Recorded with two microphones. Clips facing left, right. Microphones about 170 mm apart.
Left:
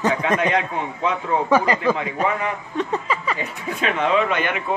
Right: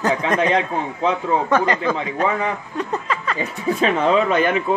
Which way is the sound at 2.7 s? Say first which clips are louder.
Left 1 dB; 5° left (ahead or behind).